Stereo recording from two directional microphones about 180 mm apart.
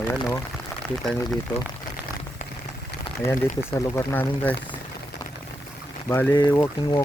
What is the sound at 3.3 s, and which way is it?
Speech, 15° left (ahead or behind).